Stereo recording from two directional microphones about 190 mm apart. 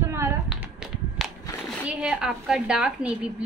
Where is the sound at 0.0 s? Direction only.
15° right (ahead or behind).